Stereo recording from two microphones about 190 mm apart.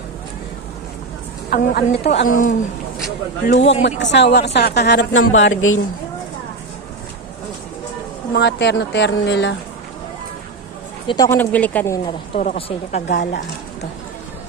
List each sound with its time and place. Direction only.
1.5 s a woman's voice: 45° left (ahead or behind)
3.6 s a woman's voice: 35° left (ahead or behind)
3.8 s a woman's voice: 70° left (ahead or behind); by 5.8 s 90° left
8.3 s a woman's voice: 65° left (ahead or behind)
11.1 s speech: 15° left (ahead or behind)
12.4 s a woman's voice: 35° left (ahead or behind)
13.1 s speech: 65° left (ahead or behind)